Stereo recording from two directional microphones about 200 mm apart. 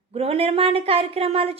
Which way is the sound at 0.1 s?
30° right (ahead or behind).